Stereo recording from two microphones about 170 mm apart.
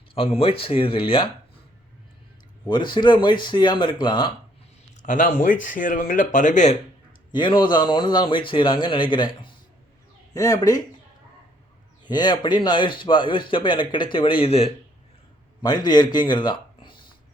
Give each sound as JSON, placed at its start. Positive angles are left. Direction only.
{"t": 0.1, "sound": "speech", "side_deg": 35}
{"t": 2.6, "sound": "speech", "side_deg": 30}
{"t": 5.0, "sound": "speech", "side_deg": 50}
{"t": 7.3, "sound": "speech", "side_deg": 25}
{"t": 12.0, "sound": "speech", "side_deg": 25}
{"t": 15.6, "sound": "speech", "side_deg": 25}